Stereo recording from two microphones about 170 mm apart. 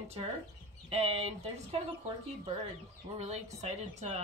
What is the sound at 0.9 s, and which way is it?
Speech, 35° right (ahead or behind).